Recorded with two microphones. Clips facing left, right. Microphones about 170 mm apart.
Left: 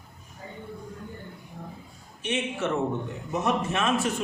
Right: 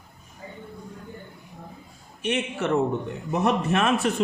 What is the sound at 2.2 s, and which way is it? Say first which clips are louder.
A man's voice: right 2 dB; 60° right (ahead or behind).